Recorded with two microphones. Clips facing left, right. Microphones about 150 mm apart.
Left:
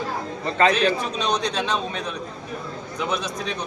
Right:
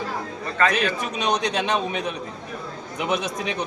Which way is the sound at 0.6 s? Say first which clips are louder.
Left 3 dB; 25° left (ahead or behind).